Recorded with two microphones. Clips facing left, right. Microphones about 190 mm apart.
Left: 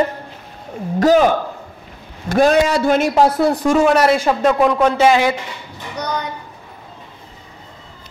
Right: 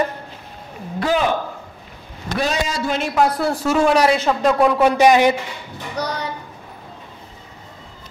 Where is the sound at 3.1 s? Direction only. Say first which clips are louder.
Left 4 dB; 25° left (ahead or behind).